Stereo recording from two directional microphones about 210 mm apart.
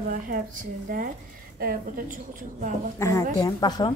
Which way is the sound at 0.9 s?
40° right (ahead or behind).